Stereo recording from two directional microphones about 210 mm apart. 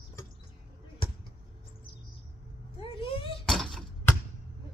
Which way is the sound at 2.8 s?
25° left (ahead or behind).